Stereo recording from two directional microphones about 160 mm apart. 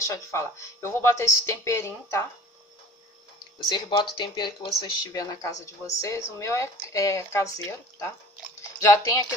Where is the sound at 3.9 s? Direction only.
30° left (ahead or behind).